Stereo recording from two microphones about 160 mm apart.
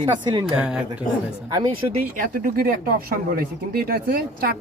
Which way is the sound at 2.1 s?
60° right (ahead or behind).